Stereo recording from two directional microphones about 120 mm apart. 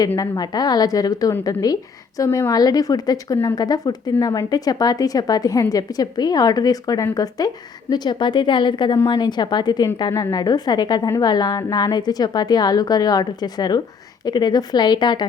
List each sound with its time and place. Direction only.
0.2 s a woman's voice: 35° left (ahead or behind)